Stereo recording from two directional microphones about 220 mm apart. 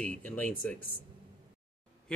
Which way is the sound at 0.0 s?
5° left (ahead or behind).